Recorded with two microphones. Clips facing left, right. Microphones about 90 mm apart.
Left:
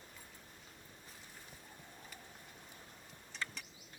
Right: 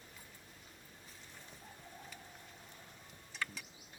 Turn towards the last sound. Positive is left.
turn(degrees=-5)  # may be behind; listen again after turning